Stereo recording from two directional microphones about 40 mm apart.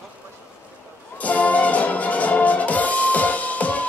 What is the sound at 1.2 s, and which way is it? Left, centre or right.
Music, left.